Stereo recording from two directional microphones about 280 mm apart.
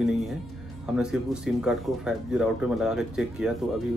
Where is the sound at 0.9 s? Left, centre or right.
Centre.